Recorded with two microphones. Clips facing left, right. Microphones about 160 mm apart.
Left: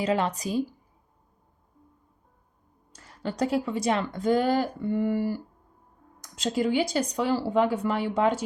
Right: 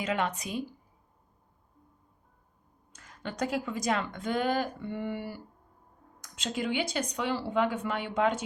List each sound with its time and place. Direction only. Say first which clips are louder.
0.0 s speech: left 5 dB; 35° left (ahead or behind)
2.9 s speech: left 6 dB; 35° left (ahead or behind)